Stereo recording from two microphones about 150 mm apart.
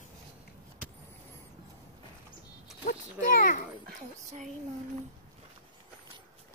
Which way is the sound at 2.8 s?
70° left (ahead or behind).